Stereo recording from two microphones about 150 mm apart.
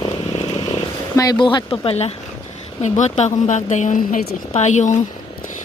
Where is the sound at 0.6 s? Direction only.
25° left (ahead or behind); by 2.1 s 40° left (ahead or behind).